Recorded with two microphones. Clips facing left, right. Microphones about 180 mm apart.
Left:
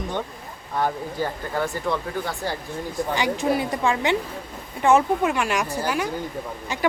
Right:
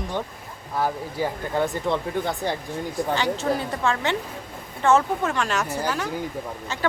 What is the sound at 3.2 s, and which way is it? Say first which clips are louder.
Speech: left 5 dB; 10° left (ahead or behind).